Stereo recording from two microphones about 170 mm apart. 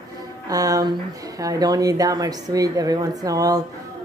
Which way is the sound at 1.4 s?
20° right (ahead or behind).